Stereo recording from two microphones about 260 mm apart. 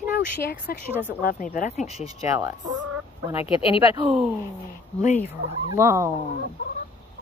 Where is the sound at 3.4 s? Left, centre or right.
Left.